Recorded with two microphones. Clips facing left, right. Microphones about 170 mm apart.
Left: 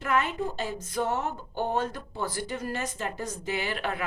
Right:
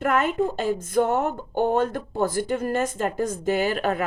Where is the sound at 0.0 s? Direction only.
50° right (ahead or behind).